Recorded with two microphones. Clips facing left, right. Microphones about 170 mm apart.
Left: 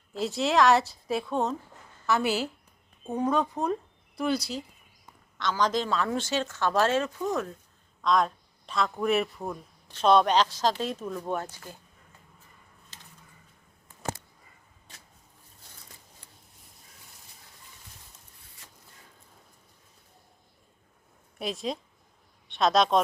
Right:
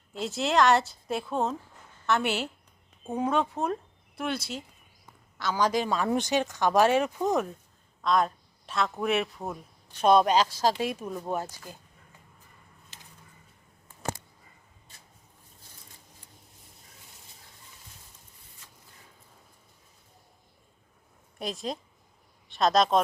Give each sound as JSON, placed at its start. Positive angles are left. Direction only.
{"t": 0.1, "sound": "a woman's voice", "side_deg": 0}
{"t": 8.0, "sound": "speech", "side_deg": 0}
{"t": 21.3, "sound": "a woman's voice", "side_deg": 0}